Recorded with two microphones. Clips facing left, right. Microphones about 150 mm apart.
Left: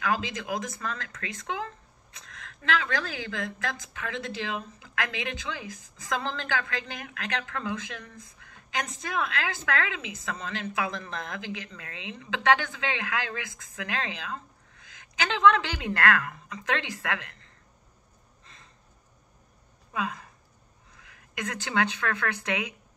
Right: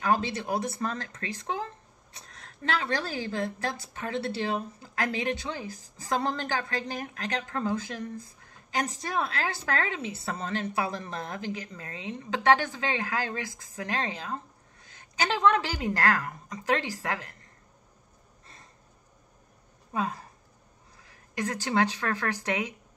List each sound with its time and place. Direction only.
0.0 s a woman's voice: 35° right (ahead or behind)
19.9 s a woman's voice: 35° right (ahead or behind)